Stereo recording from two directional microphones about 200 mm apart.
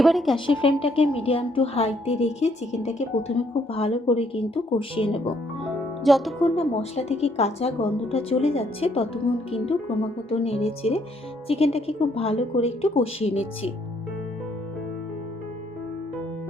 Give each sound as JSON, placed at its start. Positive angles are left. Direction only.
{"t": 0.0, "sound": "a woman's voice", "side_deg": 0}
{"t": 0.3, "sound": "a woman's voice", "side_deg": 25}
{"t": 6.0, "sound": "speech", "side_deg": 0}
{"t": 6.4, "sound": "a woman's voice", "side_deg": 30}
{"t": 10.2, "sound": "a woman's voice", "side_deg": 30}